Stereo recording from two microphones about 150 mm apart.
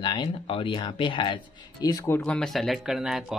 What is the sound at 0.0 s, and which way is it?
Speech, 30° left (ahead or behind).